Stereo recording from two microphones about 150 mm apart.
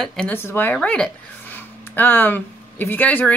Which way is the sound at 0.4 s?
15° left (ahead or behind).